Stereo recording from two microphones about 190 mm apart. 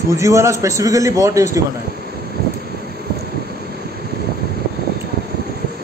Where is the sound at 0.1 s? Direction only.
15° right (ahead or behind).